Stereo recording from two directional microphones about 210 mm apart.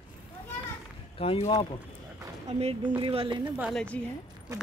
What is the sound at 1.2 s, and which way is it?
Speech, 25° left (ahead or behind).